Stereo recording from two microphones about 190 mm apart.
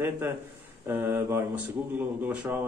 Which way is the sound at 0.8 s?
10° right (ahead or behind).